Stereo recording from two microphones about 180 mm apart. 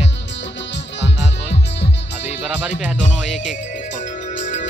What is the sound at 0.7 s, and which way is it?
Music, 80° left.